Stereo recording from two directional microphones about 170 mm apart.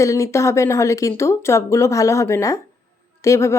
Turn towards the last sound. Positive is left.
turn(degrees=15)  # may be behind; listen again after turning